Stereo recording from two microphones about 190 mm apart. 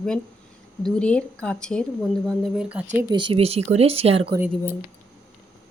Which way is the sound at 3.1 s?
25° right (ahead or behind).